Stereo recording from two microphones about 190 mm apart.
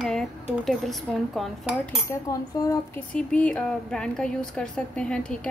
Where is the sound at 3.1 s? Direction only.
5° left (ahead or behind).